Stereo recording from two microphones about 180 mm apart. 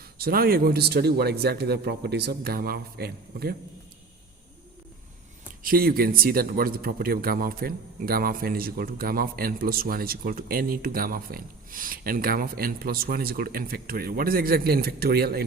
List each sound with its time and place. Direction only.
0.2 s a man's voice: 55° right (ahead or behind)
5.6 s a man's voice: 55° right (ahead or behind)